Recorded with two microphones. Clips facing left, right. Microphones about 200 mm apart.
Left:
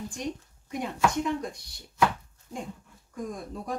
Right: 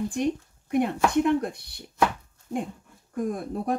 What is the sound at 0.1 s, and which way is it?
Speech, 60° right (ahead or behind).